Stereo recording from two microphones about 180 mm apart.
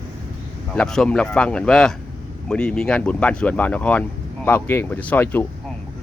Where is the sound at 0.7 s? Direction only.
5° left (ahead or behind).